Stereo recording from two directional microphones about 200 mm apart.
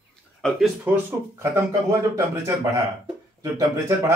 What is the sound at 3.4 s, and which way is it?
Speech, 15° right (ahead or behind).